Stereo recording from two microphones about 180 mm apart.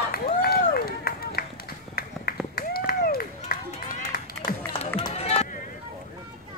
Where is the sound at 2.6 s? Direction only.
55° left (ahead or behind).